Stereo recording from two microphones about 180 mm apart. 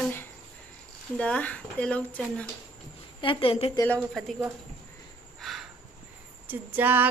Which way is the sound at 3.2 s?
30° left (ahead or behind).